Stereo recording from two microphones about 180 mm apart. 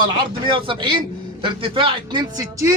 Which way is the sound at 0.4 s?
30° right (ahead or behind).